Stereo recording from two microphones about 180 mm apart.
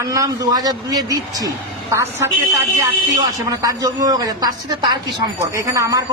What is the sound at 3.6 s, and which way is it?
A man's voice, 20° right (ahead or behind).